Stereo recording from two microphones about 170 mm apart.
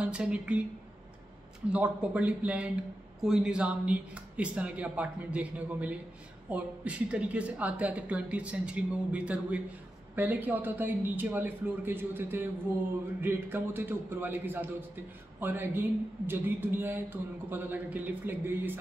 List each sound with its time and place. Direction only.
0.0 s speech: 5° right (ahead or behind)
1.7 s speech: 5° right (ahead or behind)